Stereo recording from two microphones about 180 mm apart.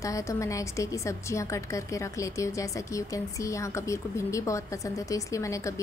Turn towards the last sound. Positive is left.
turn(degrees=15)  # may be behind; listen again after turning